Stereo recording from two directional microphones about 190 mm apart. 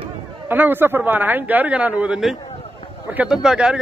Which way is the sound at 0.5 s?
10° right (ahead or behind).